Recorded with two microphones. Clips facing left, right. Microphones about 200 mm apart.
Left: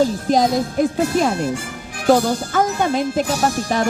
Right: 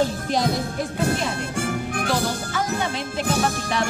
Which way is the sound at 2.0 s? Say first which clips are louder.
Left 13 dB; 50° left (ahead or behind).